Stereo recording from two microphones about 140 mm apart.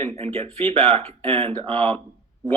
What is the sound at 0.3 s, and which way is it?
Speech, 45° right (ahead or behind).